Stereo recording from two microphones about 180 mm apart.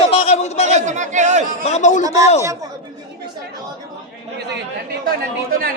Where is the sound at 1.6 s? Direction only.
40° left (ahead or behind).